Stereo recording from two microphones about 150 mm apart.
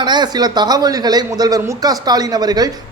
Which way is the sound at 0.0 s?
30° right (ahead or behind).